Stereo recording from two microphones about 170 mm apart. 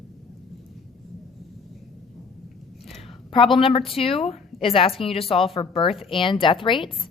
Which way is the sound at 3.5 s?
35° left (ahead or behind).